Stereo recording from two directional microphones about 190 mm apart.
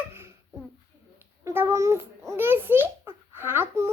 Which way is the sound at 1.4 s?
10° right (ahead or behind).